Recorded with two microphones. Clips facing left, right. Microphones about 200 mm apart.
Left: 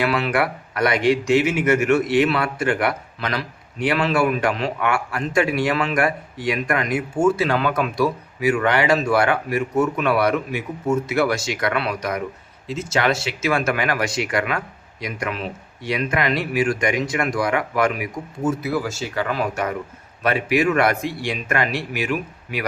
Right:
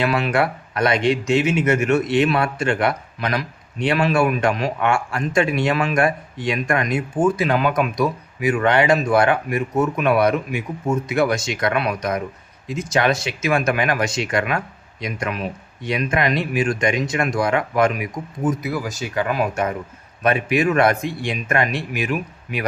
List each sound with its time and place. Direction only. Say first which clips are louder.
0.0 s speech: right 1 dB; 25° right (ahead or behind)